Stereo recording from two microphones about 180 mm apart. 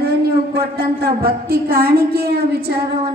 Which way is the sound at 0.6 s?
60° right (ahead or behind).